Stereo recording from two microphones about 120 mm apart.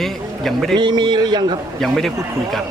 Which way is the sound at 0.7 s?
40° right (ahead or behind).